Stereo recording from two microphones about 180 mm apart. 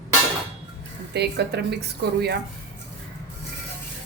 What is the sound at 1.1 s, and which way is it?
A woman's voice, 70° right (ahead or behind).